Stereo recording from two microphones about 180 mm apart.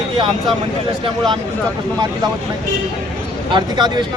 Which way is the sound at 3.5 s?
25° right (ahead or behind).